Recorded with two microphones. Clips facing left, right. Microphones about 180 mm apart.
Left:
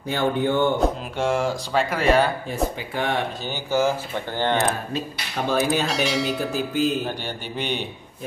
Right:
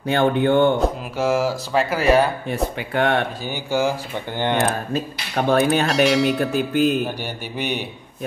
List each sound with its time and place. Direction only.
0.1 s speech: 65° right (ahead or behind)
0.7 s speech: 5° right (ahead or behind)
2.9 s speech: 60° right (ahead or behind)
3.4 s speech: 15° right (ahead or behind)
5.5 s speech: 60° right (ahead or behind)
5.9 s speech: centre (ahead or behind)
6.5 s speech: 60° right (ahead or behind)
7.5 s speech: 10° right (ahead or behind)